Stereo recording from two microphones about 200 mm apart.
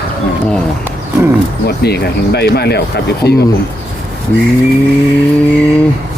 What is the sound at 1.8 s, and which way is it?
Speech, 55° left (ahead or behind).